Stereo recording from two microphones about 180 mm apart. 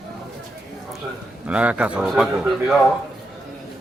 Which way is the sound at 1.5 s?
5° right (ahead or behind).